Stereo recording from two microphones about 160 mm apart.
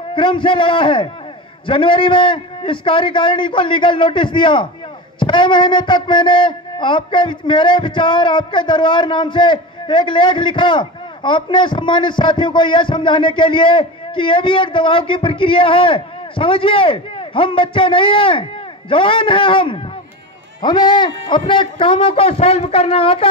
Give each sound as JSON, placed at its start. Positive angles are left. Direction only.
{"t": 0.1, "sound": "speech", "side_deg": 30}